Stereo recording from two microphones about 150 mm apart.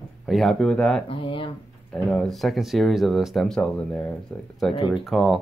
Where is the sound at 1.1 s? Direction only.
35° left (ahead or behind).